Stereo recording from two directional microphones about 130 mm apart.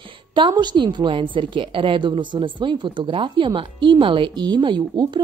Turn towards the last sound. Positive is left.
turn(degrees=-35)  # may be behind; listen again after turning